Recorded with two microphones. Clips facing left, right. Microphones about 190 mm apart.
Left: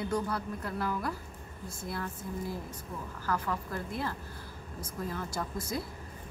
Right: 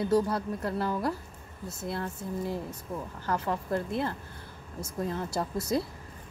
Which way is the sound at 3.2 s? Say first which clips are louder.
Right 2 dB; 25° right (ahead or behind).